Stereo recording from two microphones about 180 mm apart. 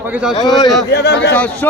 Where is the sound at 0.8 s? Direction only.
65° left (ahead or behind).